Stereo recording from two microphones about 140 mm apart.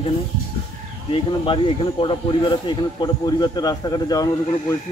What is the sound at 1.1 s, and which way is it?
A man's voice, 40° left (ahead or behind).